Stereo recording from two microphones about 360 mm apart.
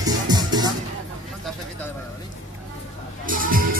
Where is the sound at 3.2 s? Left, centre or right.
Right.